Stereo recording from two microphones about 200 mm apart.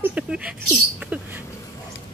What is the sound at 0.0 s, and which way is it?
Rodents, 5° right (ahead or behind).